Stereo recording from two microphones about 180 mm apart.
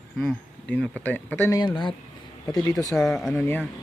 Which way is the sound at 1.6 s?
25° left (ahead or behind).